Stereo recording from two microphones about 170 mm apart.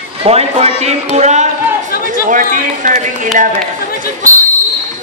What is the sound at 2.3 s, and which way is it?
A man's voice, 50° right (ahead or behind).